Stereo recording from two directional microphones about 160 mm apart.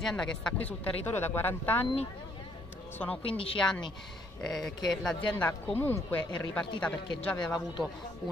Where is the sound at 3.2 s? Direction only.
35° left (ahead or behind).